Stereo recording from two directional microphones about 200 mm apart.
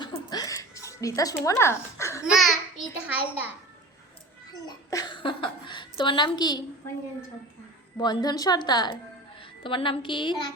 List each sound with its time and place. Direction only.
0.0 s a sound: 20° left (ahead or behind)
2.2 s a child's voice: centre (ahead or behind)
4.6 s a woman's voice: 20° left (ahead or behind)
8.0 s a woman's voice: 20° left (ahead or behind)